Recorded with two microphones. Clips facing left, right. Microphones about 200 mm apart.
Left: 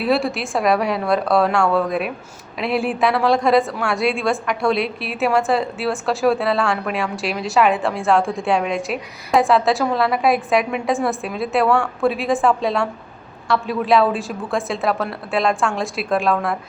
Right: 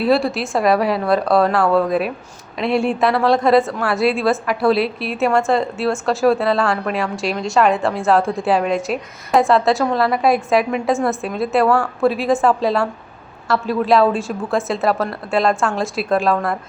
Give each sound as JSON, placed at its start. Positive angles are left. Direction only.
{"t": 0.0, "sound": "a woman's voice", "side_deg": 0}